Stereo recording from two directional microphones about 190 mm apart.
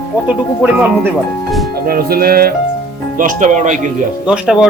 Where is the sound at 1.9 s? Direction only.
50° right (ahead or behind).